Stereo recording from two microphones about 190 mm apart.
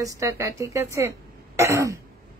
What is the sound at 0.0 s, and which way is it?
Speech, 15° right (ahead or behind).